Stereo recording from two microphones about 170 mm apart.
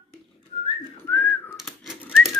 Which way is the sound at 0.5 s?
35° left (ahead or behind).